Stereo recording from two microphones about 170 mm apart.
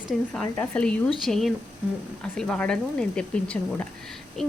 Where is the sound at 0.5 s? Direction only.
10° left (ahead or behind).